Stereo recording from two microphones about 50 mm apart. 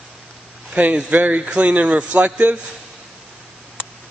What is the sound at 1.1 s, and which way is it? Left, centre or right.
A man's voice, right.